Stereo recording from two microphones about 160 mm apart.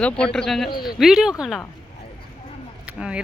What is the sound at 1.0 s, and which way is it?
Speech, centre (ahead or behind).